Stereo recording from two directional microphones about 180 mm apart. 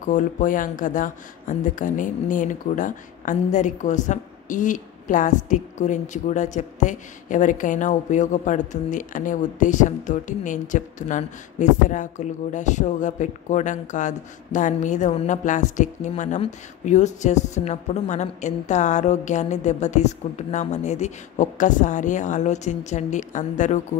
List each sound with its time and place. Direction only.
0.0 s speech: 45° left (ahead or behind)